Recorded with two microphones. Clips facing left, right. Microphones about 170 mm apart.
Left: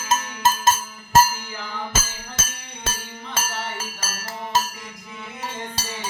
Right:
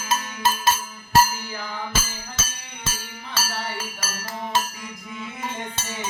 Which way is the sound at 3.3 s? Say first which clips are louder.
Even; 45° left (ahead or behind).